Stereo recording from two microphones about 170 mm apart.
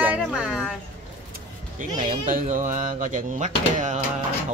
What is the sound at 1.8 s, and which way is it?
Speech, 50° right (ahead or behind).